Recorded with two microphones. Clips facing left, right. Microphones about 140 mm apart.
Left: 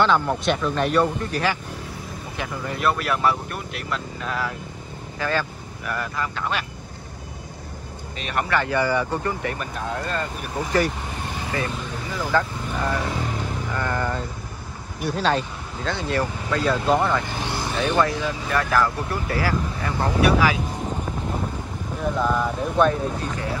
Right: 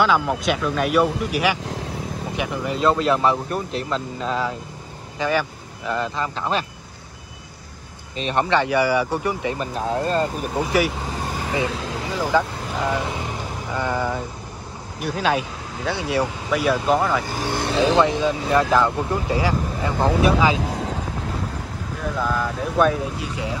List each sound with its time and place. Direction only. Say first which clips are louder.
0.0 s speech: right 1 dB; 5° right (ahead or behind); by 6.6 s 30° right (ahead or behind)
8.2 s speech: right 5 dB; 30° right (ahead or behind)
8.5 s speech: right 2 dB; 15° right (ahead or behind)
9.6 s speech: right 5 dB; 30° right (ahead or behind)
11.6 s speech: right 4 dB; 90° right
12.3 s speech: right 1 dB; 15° right (ahead or behind)
17.6 s vehicle: right 6 dB; 80° right
18.0 s speech: right 5 dB; 20° right (ahead or behind)
22.2 s speech: even; centre (ahead or behind)